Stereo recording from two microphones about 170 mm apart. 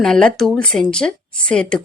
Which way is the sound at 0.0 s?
5° left (ahead or behind).